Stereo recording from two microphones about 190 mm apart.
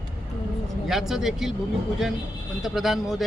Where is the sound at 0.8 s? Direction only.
Centre (ahead or behind).